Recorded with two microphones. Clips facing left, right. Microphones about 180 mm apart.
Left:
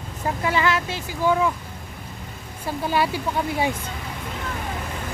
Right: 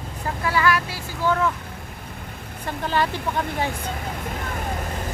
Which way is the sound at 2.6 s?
10° left (ahead or behind).